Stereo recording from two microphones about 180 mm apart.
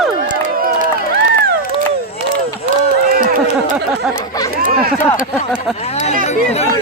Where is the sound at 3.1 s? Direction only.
50° right (ahead or behind).